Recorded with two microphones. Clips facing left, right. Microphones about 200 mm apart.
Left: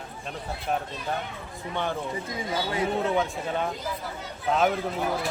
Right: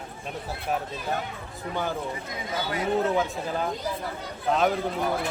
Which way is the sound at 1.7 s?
Centre (ahead or behind).